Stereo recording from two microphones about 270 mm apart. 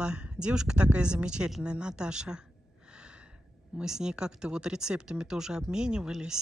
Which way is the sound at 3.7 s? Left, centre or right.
Centre.